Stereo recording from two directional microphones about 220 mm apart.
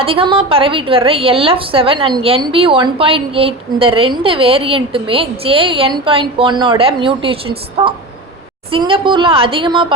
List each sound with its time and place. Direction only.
0.0 s a woman's voice: 25° right (ahead or behind)